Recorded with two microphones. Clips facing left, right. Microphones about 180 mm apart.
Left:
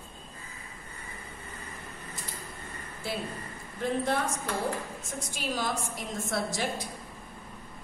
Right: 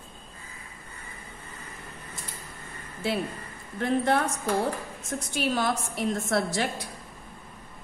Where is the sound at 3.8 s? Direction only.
65° right (ahead or behind).